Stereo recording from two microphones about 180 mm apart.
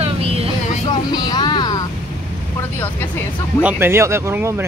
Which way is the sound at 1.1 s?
25° left (ahead or behind).